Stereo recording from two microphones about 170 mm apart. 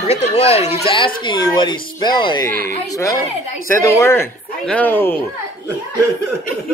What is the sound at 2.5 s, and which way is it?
Speech, 55° right (ahead or behind).